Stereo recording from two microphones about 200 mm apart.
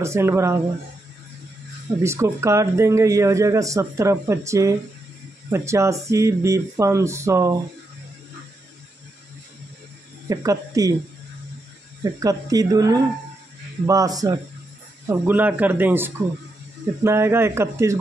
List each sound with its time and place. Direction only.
0.0 s speech: 15° right (ahead or behind)
2.0 s speech: 15° right (ahead or behind)
10.2 s speech: 15° right (ahead or behind)
12.0 s speech: 20° right (ahead or behind)